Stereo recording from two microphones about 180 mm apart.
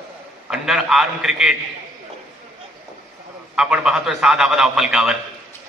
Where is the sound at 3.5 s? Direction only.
5° right (ahead or behind).